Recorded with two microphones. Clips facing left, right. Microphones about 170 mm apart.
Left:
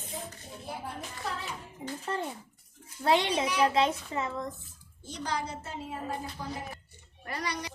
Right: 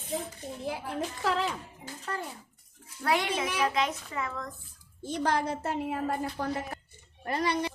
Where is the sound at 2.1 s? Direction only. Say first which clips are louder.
Left 1 dB; 25° left (ahead or behind).